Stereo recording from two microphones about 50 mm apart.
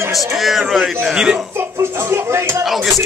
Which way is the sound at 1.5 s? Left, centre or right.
Right.